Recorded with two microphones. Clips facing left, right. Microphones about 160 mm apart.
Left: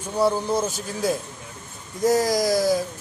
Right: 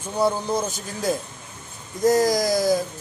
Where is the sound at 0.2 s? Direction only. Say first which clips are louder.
Left 1 dB; 5° left (ahead or behind).